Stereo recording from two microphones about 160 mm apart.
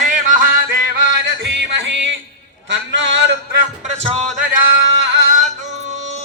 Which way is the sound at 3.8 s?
40° right (ahead or behind).